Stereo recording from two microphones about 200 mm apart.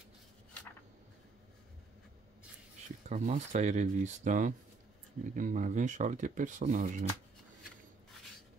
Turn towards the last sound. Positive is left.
turn(degrees=-40)  # may be behind; listen again after turning